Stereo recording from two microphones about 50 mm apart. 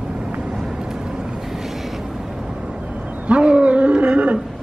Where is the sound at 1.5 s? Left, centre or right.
Centre.